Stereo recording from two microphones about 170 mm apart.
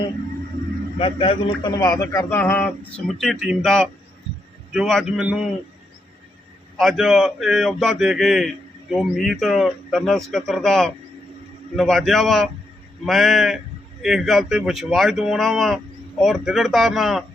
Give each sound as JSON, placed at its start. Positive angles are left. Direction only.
{"t": 0.9, "sound": "a man's voice", "side_deg": 35}
{"t": 1.8, "sound": "speech", "side_deg": 20}
{"t": 6.7, "sound": "speech", "side_deg": 0}